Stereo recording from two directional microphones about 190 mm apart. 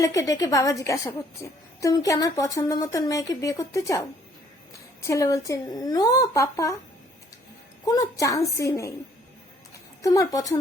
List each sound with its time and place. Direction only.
0.0 s a woman's voice: 15° left (ahead or behind)
5.0 s a woman's voice: 15° left (ahead or behind)
7.9 s a woman's voice: 20° left (ahead or behind)